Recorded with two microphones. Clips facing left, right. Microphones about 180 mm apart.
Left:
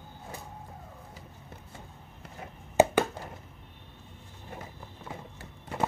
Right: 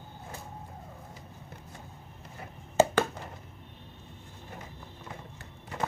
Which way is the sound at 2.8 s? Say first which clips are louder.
Left 2 dB; 15° left (ahead or behind).